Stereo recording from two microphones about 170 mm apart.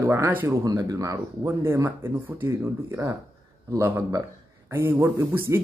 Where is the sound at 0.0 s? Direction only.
15° right (ahead or behind).